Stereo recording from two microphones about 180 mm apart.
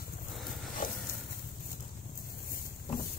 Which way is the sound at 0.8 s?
50° left (ahead or behind).